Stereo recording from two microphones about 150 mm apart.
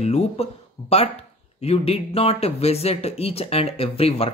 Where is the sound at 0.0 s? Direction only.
45° left (ahead or behind).